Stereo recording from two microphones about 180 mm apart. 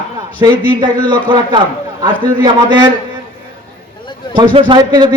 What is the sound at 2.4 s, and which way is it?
Speech, 25° right (ahead or behind).